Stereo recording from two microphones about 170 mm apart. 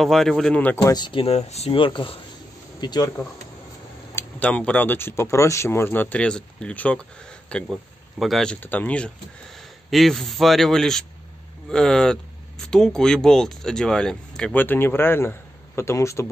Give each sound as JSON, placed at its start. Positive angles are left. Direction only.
{"t": 0.0, "sound": "speech", "side_deg": 0}
{"t": 0.7, "sound": "speech", "side_deg": 25}
{"t": 4.1, "sound": "speech", "side_deg": 10}